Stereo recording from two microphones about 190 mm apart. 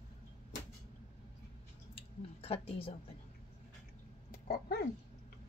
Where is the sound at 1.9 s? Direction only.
30° left (ahead or behind).